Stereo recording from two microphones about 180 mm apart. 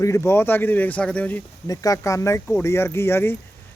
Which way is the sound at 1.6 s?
20° left (ahead or behind).